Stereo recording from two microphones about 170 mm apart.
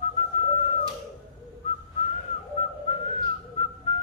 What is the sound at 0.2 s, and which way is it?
Whistling, 40° left (ahead or behind).